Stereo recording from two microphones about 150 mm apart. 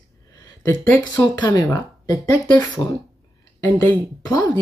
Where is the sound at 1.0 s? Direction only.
25° left (ahead or behind).